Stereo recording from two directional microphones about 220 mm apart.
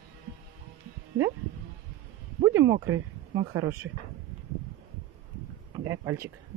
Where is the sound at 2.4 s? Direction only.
15° right (ahead or behind).